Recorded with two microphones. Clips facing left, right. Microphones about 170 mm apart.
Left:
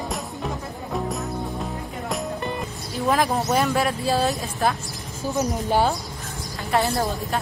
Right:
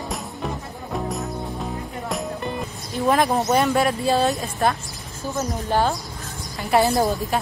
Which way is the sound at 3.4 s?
Centre (ahead or behind).